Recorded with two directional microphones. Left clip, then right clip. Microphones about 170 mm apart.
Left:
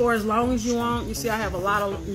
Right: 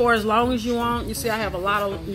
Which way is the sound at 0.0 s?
5° left (ahead or behind).